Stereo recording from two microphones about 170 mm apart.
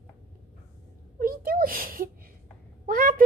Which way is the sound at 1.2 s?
55° right (ahead or behind).